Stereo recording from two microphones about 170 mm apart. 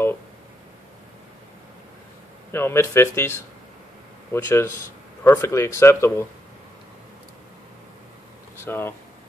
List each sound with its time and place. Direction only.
2.5 s speech: 15° left (ahead or behind)
8.5 s speech: 15° left (ahead or behind)